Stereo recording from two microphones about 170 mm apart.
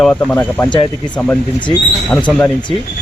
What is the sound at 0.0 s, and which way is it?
Speech, 10° left (ahead or behind).